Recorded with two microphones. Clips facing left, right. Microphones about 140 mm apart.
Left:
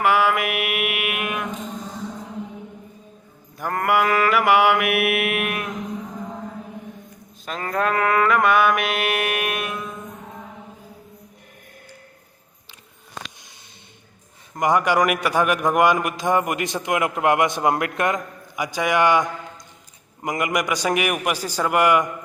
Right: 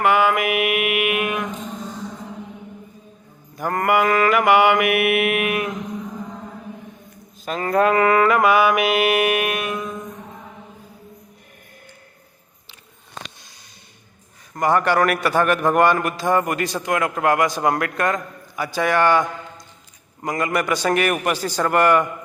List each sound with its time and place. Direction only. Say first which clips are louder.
0.0 s mantra: right 2 dB; centre (ahead or behind)
3.6 s mantra: right 2 dB; centre (ahead or behind)
7.4 s mantra: right 5 dB; 5° right (ahead or behind)
14.5 s a man's voice: right 1 dB; 15° left (ahead or behind)